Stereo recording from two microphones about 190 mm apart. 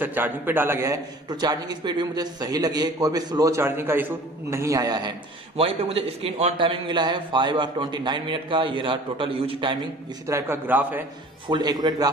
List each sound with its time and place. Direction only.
0.0 s a man's voice: 10° right (ahead or behind)
5.6 s a man's voice: 30° right (ahead or behind); by 11.1 s 10° right (ahead or behind)
11.4 s a man's voice: 20° right (ahead or behind)